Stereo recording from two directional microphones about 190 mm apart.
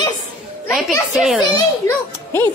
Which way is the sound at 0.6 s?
Centre (ahead or behind).